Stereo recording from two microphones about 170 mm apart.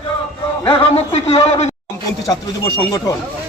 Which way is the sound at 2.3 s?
20° left (ahead or behind).